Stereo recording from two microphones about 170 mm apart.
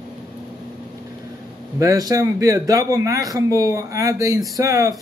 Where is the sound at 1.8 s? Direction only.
20° right (ahead or behind).